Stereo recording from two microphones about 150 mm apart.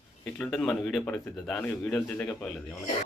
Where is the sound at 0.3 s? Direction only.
10° left (ahead or behind).